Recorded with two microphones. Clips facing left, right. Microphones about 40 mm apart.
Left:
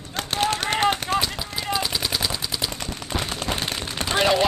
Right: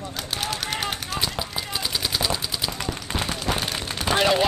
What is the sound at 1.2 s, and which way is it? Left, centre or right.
Machine gun, centre.